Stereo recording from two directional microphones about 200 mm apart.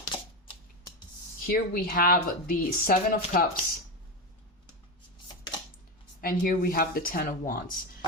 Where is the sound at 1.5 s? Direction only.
45° left (ahead or behind).